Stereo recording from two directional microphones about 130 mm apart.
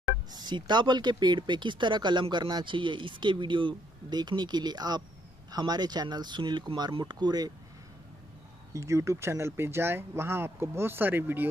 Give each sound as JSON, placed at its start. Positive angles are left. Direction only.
{"t": 0.3, "sound": "speech", "side_deg": -35}
{"t": 8.7, "sound": "speech", "side_deg": -20}